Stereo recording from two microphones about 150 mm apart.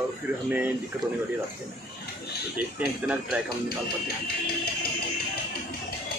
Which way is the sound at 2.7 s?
10° right (ahead or behind).